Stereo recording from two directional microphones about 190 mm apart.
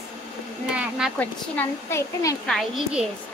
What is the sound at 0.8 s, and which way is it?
Speech, 5° right (ahead or behind).